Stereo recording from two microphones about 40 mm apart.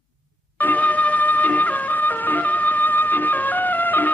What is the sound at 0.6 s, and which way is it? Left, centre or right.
Music, left.